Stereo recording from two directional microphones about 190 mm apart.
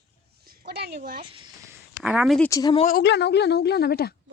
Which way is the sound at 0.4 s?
55° right (ahead or behind).